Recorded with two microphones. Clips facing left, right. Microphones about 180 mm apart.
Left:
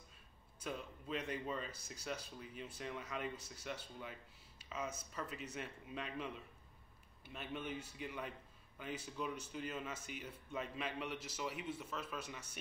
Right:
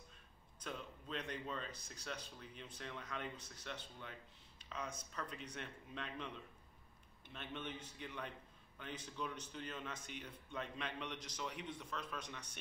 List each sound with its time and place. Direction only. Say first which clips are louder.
0.6 s speech: left 3 dB; 5° left (ahead or behind)